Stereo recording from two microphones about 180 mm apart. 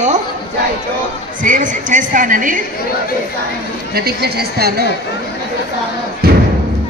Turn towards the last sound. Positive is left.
turn(degrees=-60)  # may be behind; listen again after turning